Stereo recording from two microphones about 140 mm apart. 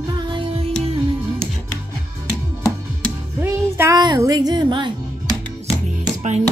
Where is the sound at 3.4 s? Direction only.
15° right (ahead or behind).